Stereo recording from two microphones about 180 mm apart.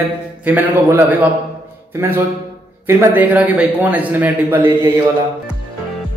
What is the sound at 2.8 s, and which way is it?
A man's voice, 10° right (ahead or behind).